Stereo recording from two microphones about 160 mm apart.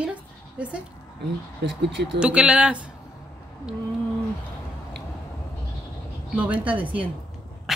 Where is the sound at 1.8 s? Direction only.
90° right.